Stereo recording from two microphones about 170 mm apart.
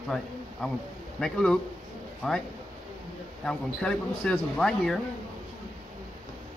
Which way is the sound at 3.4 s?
5° left (ahead or behind).